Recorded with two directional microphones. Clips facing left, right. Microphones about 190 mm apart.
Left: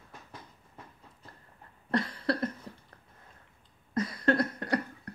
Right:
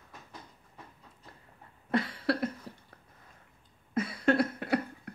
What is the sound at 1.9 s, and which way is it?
Cough, 5° right (ahead or behind).